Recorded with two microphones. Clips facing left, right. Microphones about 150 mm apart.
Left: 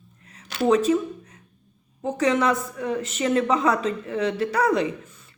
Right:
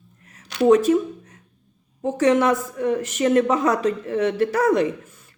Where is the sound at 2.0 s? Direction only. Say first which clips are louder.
Right 4 dB; 45° right (ahead or behind).